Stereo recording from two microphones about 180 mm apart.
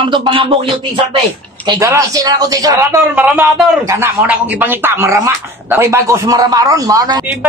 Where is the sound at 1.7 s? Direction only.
15° right (ahead or behind).